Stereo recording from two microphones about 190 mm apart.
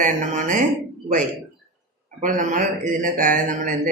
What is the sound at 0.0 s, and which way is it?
Speech, 40° right (ahead or behind).